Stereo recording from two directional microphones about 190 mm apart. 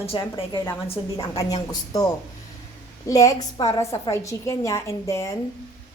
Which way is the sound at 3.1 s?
20° left (ahead or behind).